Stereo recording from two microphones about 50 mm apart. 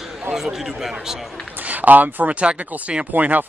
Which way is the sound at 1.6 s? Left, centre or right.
Right.